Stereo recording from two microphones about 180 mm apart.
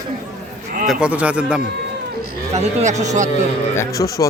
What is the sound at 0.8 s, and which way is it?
Speech, 5° right (ahead or behind).